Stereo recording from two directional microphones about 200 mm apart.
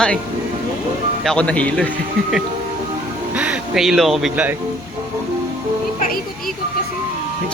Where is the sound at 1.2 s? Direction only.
5° left (ahead or behind).